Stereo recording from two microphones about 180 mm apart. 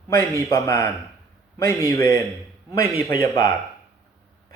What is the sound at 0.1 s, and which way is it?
Speech, 15° left (ahead or behind).